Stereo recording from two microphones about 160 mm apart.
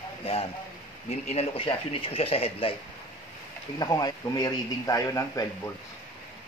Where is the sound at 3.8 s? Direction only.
25° left (ahead or behind).